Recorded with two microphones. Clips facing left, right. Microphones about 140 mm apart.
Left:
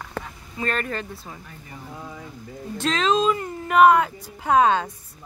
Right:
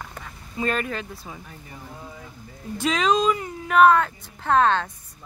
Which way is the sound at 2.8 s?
5° right (ahead or behind).